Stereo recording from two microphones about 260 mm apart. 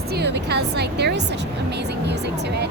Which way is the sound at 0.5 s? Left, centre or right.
Right.